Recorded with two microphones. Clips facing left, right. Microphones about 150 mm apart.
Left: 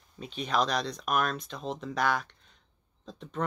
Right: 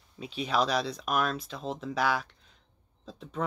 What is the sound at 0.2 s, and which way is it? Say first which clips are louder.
Speech: right 1 dB; 5° right (ahead or behind).